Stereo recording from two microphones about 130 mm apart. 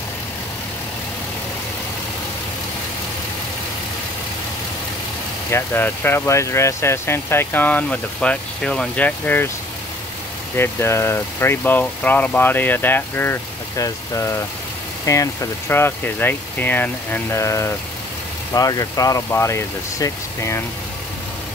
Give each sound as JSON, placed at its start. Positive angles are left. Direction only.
{"t": 5.5, "sound": "speech", "side_deg": 15}
{"t": 10.5, "sound": "speech", "side_deg": 20}